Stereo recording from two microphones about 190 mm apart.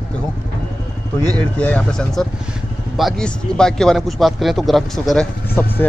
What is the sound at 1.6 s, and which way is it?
Speech, 5° left (ahead or behind).